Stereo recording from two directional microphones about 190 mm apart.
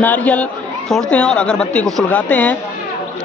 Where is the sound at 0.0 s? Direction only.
10° left (ahead or behind).